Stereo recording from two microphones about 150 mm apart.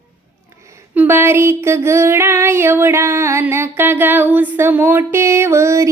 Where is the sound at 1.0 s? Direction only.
15° right (ahead or behind).